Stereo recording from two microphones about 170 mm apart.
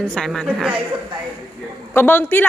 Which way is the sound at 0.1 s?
5° left (ahead or behind).